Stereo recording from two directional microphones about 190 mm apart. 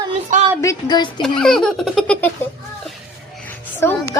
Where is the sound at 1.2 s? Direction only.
5° left (ahead or behind).